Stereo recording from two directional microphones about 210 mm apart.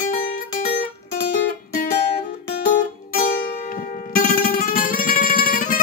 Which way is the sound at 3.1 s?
40° left (ahead or behind).